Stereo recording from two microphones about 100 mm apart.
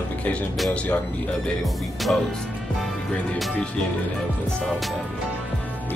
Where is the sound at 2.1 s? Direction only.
5° left (ahead or behind).